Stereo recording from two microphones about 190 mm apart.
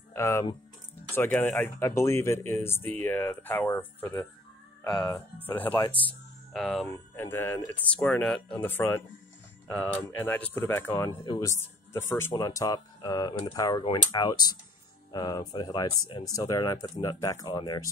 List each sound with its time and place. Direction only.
0.1 s speech: 15° left (ahead or behind)
6.0 s music: centre (ahead or behind)
6.9 s speech: 10° left (ahead or behind)